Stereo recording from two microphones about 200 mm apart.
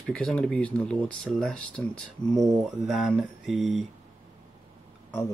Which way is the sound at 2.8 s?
Centre (ahead or behind).